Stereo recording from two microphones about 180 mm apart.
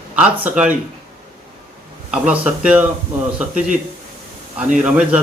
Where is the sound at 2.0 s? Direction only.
5° right (ahead or behind).